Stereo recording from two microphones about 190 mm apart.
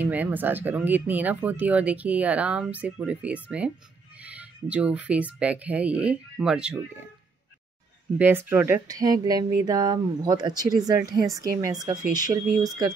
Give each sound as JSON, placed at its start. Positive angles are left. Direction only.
{"t": 0.0, "sound": "speech", "side_deg": -10}
{"t": 8.2, "sound": "speech", "side_deg": -10}